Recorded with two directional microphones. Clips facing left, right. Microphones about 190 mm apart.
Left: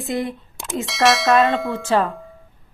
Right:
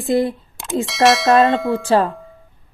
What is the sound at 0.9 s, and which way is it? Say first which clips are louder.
Speech: right 3 dB; centre (ahead or behind).